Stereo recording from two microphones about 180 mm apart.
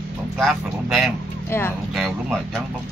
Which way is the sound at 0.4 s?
Centre (ahead or behind).